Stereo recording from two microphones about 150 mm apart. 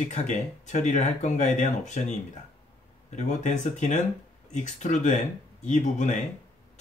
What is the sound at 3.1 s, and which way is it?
Speech, 55° left (ahead or behind).